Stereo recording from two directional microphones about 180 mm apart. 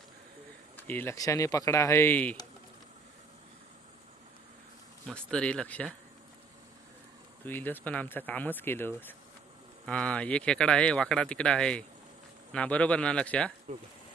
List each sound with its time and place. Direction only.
0.7 s speech: 10° left (ahead or behind)
5.0 s speech: 5° left (ahead or behind)
7.4 s speech: 10° left (ahead or behind)
13.7 s speech: 40° right (ahead or behind)